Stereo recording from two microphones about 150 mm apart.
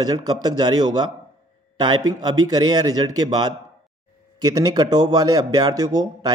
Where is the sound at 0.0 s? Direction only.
25° right (ahead or behind).